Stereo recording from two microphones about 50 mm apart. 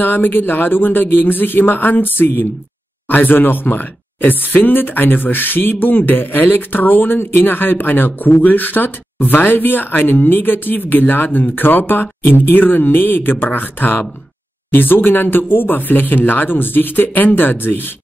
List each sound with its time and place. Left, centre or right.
0.0 s speech: left